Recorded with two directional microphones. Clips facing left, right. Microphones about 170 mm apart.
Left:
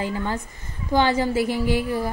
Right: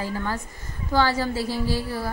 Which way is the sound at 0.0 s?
20° left (ahead or behind).